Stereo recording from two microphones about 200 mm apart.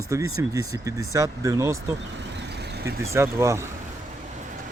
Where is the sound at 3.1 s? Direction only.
15° right (ahead or behind).